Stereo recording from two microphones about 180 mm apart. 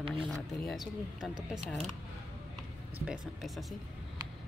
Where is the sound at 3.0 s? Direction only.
Centre (ahead or behind).